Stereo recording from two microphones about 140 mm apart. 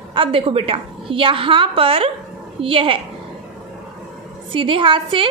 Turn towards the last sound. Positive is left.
turn(degrees=-40)  # may be behind; listen again after turning